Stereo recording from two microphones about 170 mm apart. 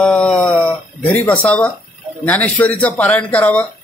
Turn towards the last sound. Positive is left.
turn(degrees=10)  # may be behind; listen again after turning